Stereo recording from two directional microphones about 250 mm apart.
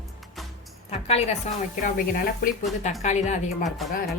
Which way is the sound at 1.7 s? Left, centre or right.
Left.